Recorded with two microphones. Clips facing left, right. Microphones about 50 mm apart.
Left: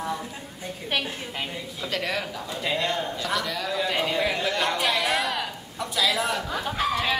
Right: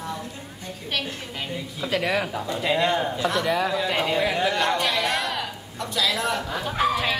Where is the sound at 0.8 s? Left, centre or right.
Centre.